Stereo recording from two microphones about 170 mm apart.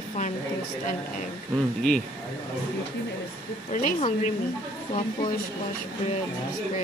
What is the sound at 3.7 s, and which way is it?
Speech, 45° left (ahead or behind).